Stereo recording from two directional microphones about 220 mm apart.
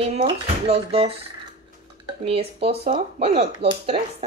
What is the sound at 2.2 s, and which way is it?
Speech, 25° right (ahead or behind).